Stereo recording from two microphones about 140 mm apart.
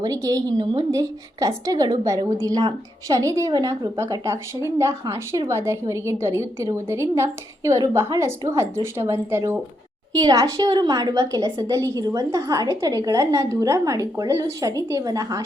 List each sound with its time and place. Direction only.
0.0 s a woman's voice: 25° right (ahead or behind)
10.1 s a woman's voice: 30° right (ahead or behind)